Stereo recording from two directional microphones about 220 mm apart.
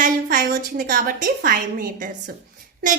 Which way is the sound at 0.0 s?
45° right (ahead or behind).